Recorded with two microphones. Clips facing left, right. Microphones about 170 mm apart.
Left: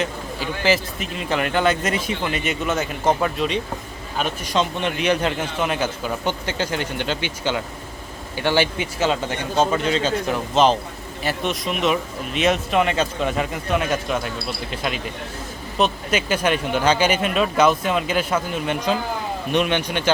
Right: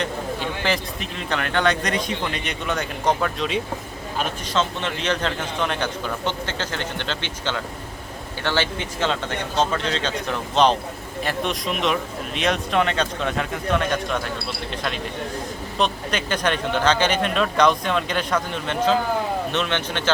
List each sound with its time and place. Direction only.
0.0 s speech: 5° left (ahead or behind)
4.4 s speech: 15° left (ahead or behind)